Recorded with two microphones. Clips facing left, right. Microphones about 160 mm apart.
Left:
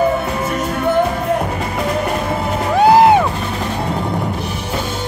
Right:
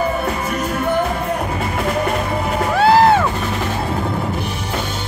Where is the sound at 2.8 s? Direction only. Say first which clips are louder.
Left 3 dB; 15° left (ahead or behind).